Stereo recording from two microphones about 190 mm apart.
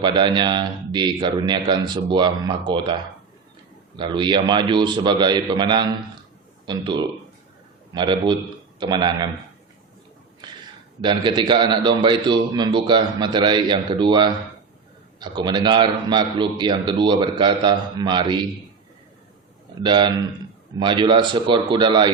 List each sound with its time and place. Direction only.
0.0 s a man's voice: 25° right (ahead or behind)
11.0 s a man's voice: 25° right (ahead or behind)
19.8 s a man's voice: 25° right (ahead or behind)